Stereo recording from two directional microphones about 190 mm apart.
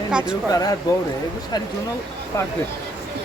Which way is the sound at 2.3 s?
15° left (ahead or behind).